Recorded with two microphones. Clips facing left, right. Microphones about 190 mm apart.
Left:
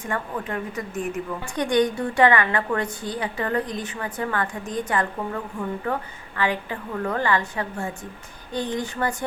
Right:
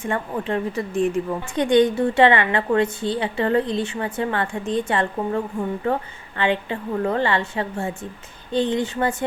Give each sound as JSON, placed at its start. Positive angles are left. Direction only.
{"t": 0.0, "sound": "a woman's voice", "side_deg": -25}